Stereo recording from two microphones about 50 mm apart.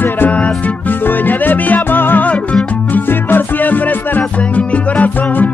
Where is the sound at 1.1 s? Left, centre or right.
Left.